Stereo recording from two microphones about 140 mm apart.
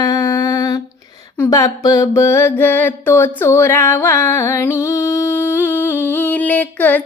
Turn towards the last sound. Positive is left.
turn(degrees=10)  # may be behind; listen again after turning